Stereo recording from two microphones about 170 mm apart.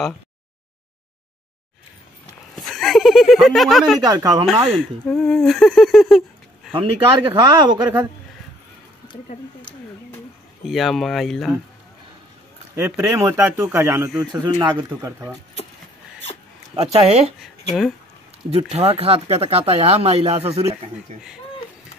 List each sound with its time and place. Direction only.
2.6 s a sound: centre (ahead or behind)
4.0 s speech: 25° right (ahead or behind)
4.7 s speech: 5° left (ahead or behind)
6.7 s speech: 30° right (ahead or behind)
10.6 s speech: centre (ahead or behind)
12.7 s speech: 15° right (ahead or behind)
16.7 s speech: 35° right (ahead or behind)
18.5 s speech: 35° right (ahead or behind)